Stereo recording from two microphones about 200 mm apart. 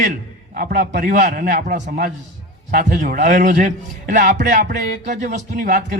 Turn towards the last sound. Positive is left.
turn(degrees=-40)  # may be behind; listen again after turning